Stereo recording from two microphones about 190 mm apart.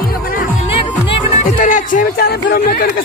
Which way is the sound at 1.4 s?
45° left (ahead or behind).